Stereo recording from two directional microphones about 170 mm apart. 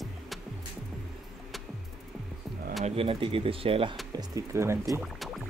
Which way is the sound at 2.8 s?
35° right (ahead or behind).